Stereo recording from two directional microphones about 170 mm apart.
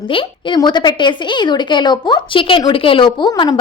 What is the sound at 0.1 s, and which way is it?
A woman's voice, 25° left (ahead or behind).